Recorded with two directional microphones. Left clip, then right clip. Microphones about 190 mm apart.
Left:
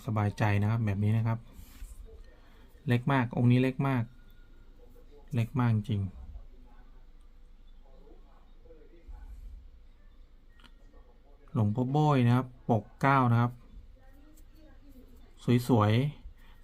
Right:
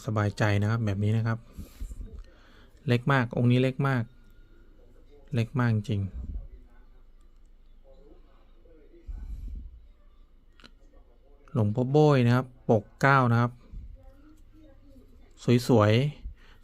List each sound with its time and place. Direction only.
0.0 s speech: 30° right (ahead or behind)
2.8 s speech: 35° right (ahead or behind)
5.3 s speech: 35° right (ahead or behind)
11.5 s speech: 30° right (ahead or behind)
15.4 s speech: 30° right (ahead or behind)